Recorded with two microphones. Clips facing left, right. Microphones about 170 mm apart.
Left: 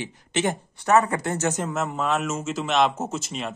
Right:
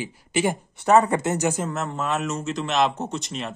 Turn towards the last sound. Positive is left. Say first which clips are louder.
# even
turn(degrees=0)  # may be behind; listen again after turning